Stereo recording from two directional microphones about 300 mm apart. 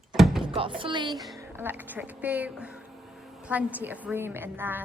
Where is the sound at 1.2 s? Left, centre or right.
Centre.